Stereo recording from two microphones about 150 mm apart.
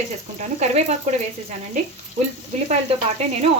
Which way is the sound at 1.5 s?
45° right (ahead or behind).